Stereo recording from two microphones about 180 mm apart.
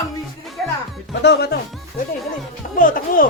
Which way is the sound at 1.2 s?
65° left (ahead or behind).